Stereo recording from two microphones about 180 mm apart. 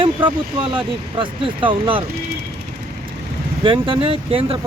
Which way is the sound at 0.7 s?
25° right (ahead or behind).